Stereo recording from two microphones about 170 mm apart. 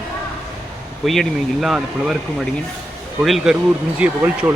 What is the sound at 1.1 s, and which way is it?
Speech, centre (ahead or behind).